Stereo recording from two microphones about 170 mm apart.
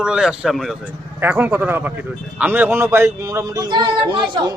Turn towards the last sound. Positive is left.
turn(degrees=-25)  # may be behind; listen again after turning